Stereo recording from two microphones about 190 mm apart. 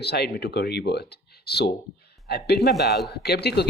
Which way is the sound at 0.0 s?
60° left (ahead or behind).